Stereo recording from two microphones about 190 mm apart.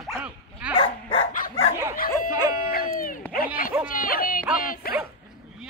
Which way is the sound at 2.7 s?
50° left (ahead or behind).